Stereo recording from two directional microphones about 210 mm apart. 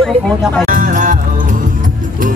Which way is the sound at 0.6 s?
40° right (ahead or behind).